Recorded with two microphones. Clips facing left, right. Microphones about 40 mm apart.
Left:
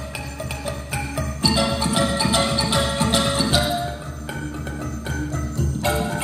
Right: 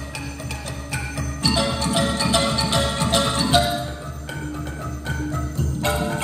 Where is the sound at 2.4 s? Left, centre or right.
Centre.